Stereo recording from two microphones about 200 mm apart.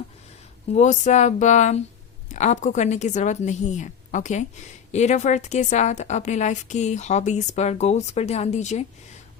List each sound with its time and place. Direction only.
0.7 s a woman's voice: 35° left (ahead or behind)